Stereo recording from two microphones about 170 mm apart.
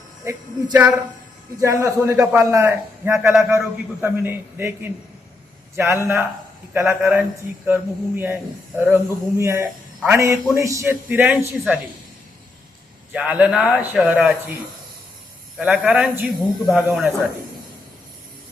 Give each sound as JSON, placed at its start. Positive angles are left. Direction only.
{"t": 0.3, "sound": "a man's voice", "side_deg": -20}
{"t": 2.1, "sound": "a man's voice", "side_deg": -5}
{"t": 2.4, "sound": "a man's voice", "side_deg": -15}
{"t": 13.1, "sound": "a man's voice", "side_deg": -10}
{"t": 15.5, "sound": "a man's voice", "side_deg": -5}